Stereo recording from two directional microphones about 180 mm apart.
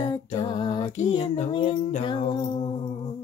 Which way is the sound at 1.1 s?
40° left (ahead or behind).